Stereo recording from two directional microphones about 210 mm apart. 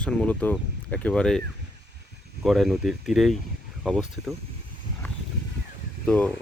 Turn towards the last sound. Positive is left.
turn(degrees=5)  # may be behind; listen again after turning